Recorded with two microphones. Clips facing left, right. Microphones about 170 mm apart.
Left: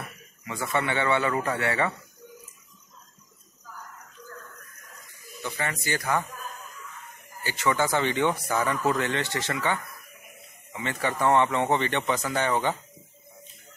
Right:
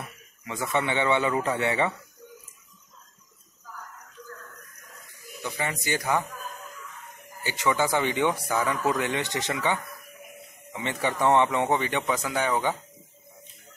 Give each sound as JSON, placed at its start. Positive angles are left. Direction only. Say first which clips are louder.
{"t": 0.5, "sound": "a man's voice", "louder": "right 1 dB", "side_deg": -15}
{"t": 5.4, "sound": "a man's voice", "louder": "right 1 dB", "side_deg": -15}
{"t": 7.4, "sound": "a man's voice", "louder": "even", "side_deg": -15}